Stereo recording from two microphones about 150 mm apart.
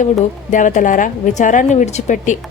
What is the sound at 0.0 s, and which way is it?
A woman's voice, 55° left (ahead or behind).